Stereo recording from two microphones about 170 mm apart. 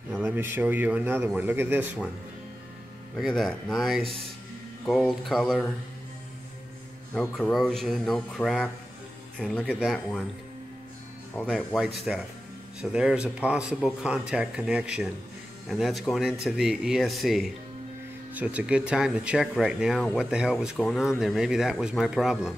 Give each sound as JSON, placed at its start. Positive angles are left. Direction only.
{"t": 0.2, "sound": "speech", "side_deg": -15}
{"t": 3.2, "sound": "speech", "side_deg": 0}
{"t": 7.2, "sound": "speech", "side_deg": 5}
{"t": 11.4, "sound": "speech", "side_deg": -5}